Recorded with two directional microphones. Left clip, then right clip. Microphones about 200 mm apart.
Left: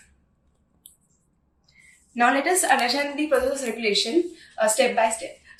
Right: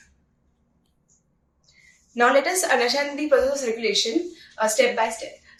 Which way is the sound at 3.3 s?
15° right (ahead or behind).